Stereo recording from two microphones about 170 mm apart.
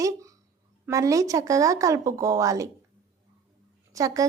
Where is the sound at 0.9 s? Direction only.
20° right (ahead or behind).